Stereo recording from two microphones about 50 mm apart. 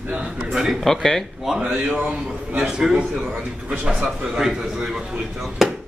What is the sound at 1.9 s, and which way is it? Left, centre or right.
Speech, right.